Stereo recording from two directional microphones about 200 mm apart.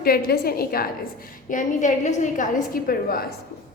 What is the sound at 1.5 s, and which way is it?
A woman's voice, 40° left (ahead or behind).